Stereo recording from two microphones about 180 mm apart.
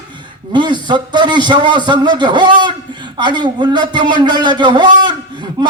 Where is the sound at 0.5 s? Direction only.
25° right (ahead or behind).